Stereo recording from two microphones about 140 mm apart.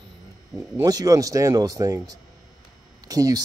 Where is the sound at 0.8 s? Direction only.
25° right (ahead or behind).